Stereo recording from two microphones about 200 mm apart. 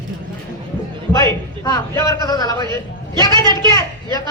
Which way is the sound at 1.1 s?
15° left (ahead or behind).